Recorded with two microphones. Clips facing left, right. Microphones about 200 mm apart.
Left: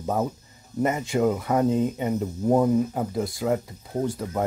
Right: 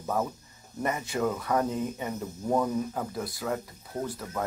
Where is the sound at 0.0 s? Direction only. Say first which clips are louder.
Left 4 dB; 25° left (ahead or behind).